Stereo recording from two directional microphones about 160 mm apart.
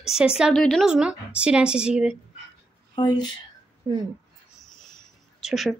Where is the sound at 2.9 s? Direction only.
25° left (ahead or behind).